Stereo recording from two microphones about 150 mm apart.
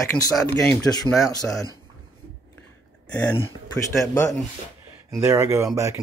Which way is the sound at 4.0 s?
20° left (ahead or behind).